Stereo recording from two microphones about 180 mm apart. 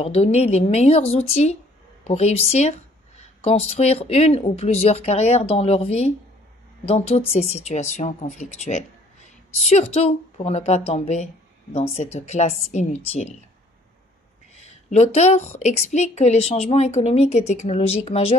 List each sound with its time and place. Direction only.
0.0 s a woman's voice: 35° left (ahead or behind)
14.6 s a woman's voice: 40° left (ahead or behind)